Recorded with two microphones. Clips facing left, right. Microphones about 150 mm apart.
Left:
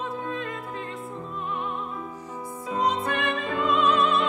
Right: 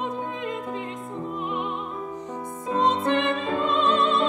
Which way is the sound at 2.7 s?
25° right (ahead or behind).